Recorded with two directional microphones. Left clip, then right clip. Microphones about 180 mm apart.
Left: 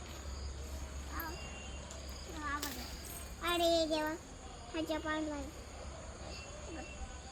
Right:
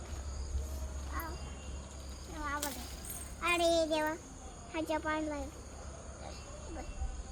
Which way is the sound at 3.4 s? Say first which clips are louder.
Right 2 dB; 25° right (ahead or behind).